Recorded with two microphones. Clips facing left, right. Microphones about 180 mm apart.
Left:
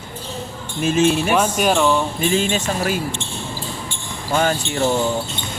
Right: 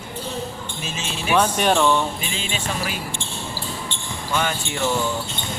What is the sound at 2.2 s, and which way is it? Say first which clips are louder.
Speech: left 10 dB; 45° left (ahead or behind).